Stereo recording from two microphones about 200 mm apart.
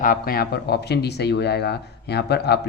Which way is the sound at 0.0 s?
45° left (ahead or behind).